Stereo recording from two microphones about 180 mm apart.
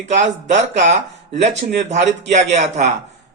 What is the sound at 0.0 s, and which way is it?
Speech, 40° right (ahead or behind).